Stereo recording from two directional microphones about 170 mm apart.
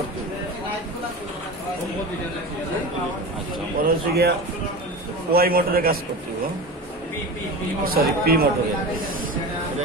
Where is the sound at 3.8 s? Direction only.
70° right (ahead or behind).